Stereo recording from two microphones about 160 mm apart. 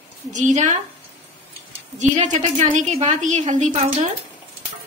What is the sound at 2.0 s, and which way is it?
A woman's voice, 50° right (ahead or behind).